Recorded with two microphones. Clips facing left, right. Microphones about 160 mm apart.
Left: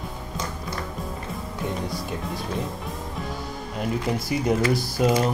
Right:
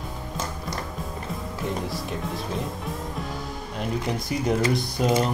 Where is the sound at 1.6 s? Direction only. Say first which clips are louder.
Left 1 dB; centre (ahead or behind).